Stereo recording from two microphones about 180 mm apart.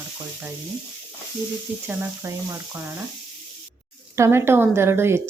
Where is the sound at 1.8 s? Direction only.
15° right (ahead or behind).